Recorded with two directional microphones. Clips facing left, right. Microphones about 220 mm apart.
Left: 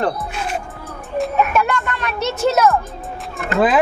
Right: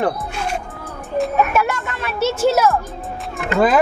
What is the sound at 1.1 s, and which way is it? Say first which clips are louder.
A child's voice: even; 5° right (ahead or behind).